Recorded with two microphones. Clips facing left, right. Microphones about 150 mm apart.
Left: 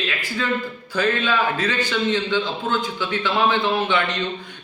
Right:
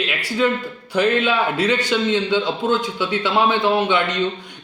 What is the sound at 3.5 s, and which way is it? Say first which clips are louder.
Speech: right 3 dB; 15° right (ahead or behind).